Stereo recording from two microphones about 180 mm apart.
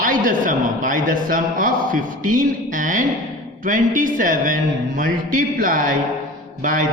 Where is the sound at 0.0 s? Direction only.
50° right (ahead or behind).